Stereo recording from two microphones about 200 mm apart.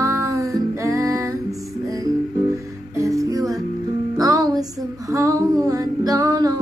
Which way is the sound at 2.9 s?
15° right (ahead or behind).